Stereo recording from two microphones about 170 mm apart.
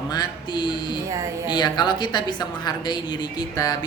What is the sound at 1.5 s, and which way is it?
A woman's voice, 25° left (ahead or behind).